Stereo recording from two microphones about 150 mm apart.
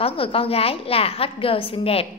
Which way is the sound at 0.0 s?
40° left (ahead or behind).